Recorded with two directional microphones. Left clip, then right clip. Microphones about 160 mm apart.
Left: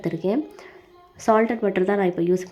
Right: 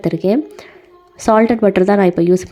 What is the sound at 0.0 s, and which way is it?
Speech, 35° right (ahead or behind).